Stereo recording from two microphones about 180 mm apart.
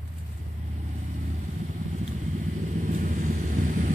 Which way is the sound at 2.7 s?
45° right (ahead or behind).